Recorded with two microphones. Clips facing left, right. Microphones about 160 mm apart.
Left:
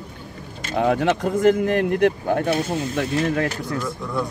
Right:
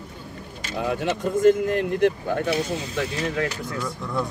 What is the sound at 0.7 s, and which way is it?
Speech, 65° left (ahead or behind).